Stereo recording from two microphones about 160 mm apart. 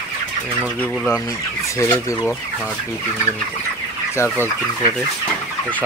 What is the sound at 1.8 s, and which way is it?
Speech, 20° left (ahead or behind).